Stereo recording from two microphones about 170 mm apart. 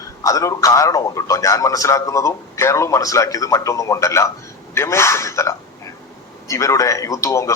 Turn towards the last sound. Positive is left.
turn(degrees=15)  # may be behind; listen again after turning